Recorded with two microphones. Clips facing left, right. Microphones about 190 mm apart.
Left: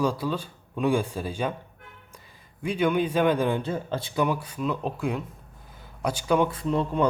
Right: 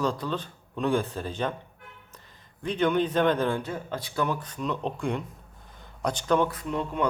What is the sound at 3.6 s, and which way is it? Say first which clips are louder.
Speech: left 4 dB; 25° left (ahead or behind).